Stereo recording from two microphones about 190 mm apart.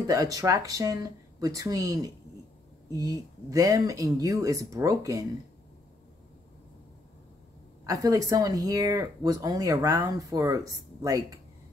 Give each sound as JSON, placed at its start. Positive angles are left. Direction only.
{"t": 0.0, "sound": "speech", "side_deg": -20}
{"t": 7.8, "sound": "speech", "side_deg": -20}